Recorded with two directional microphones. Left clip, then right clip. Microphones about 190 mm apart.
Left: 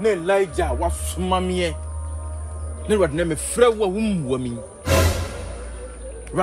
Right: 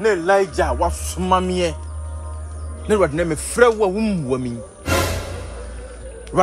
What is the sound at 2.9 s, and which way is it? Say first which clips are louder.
Speech: right 2 dB; 10° right (ahead or behind).